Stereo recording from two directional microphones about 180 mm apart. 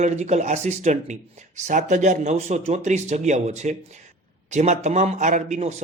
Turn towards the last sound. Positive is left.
turn(degrees=-40)  # may be behind; listen again after turning